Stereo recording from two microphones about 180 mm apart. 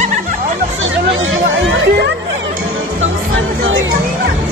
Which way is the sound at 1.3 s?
90° right.